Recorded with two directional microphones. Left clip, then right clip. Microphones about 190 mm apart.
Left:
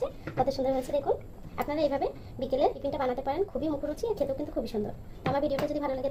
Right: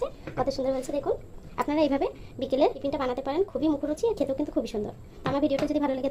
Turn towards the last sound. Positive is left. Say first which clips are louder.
# right 3 dB
turn(degrees=-40)  # may be behind; listen again after turning